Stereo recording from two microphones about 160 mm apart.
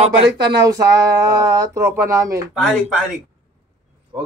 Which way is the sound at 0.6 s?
25° right (ahead or behind).